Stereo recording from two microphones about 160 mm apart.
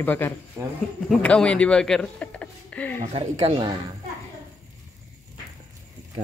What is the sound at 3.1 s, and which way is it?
Speech, 35° right (ahead or behind).